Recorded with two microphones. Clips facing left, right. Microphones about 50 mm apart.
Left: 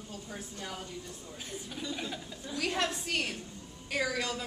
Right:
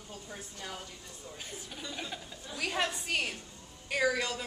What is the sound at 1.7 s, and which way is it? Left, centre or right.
A woman's voice, centre.